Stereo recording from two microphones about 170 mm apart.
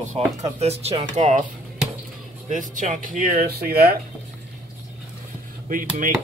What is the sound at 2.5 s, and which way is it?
Speech, 50° right (ahead or behind).